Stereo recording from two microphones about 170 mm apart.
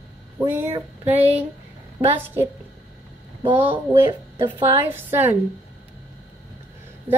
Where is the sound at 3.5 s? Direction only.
10° right (ahead or behind).